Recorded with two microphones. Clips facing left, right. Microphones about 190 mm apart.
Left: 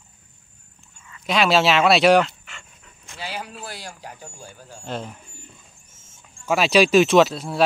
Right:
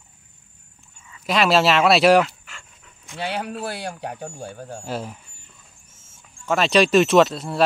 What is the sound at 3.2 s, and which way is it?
Speech, 65° right (ahead or behind).